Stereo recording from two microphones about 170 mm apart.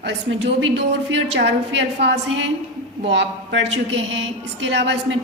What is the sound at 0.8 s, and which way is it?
A woman's voice, 90° right.